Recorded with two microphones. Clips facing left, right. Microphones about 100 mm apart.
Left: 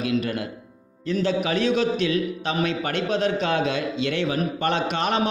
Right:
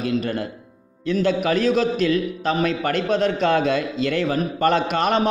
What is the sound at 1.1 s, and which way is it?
A man's voice, 45° right (ahead or behind).